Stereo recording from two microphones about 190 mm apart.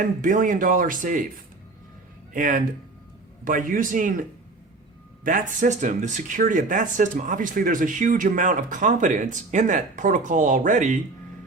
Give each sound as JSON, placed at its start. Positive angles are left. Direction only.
{"t": 0.0, "sound": "speech", "side_deg": -45}
{"t": 2.3, "sound": "speech", "side_deg": -45}